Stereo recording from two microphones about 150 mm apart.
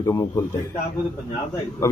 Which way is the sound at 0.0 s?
20° left (ahead or behind).